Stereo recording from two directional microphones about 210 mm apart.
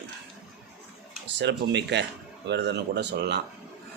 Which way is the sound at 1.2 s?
55° right (ahead or behind).